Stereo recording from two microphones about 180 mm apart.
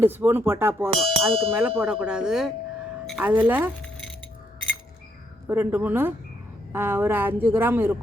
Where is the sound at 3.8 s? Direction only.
5° left (ahead or behind).